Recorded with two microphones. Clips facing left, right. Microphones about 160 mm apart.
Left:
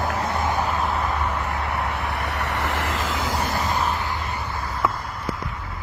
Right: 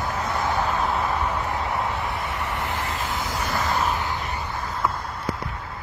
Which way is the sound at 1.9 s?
65° left (ahead or behind).